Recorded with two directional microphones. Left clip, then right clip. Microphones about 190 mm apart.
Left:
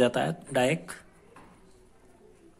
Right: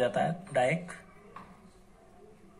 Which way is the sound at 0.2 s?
55° left (ahead or behind).